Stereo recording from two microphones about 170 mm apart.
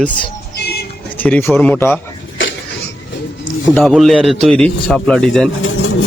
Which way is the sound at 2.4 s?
90° left.